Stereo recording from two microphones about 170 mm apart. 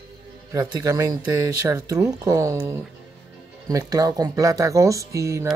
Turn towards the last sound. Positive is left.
turn(degrees=-15)  # may be behind; listen again after turning